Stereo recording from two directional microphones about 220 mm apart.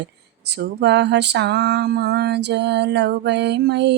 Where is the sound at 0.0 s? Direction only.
50° right (ahead or behind).